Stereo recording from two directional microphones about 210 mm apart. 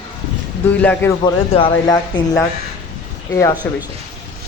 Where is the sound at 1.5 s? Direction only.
25° left (ahead or behind).